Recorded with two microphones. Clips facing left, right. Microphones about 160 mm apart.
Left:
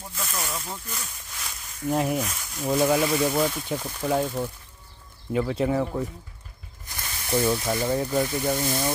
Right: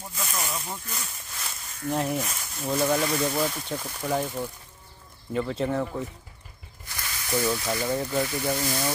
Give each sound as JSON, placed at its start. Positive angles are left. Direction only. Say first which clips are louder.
{"t": 0.2, "sound": "a sound", "louder": "even", "side_deg": 0}
{"t": 2.6, "sound": "speech", "louder": "left 3 dB", "side_deg": 5}
{"t": 7.0, "sound": "snake", "louder": "left 3 dB", "side_deg": 20}
{"t": 7.5, "sound": "speech", "louder": "left 2 dB", "side_deg": 20}